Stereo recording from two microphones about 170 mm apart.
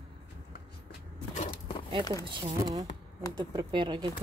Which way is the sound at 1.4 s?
30° left (ahead or behind).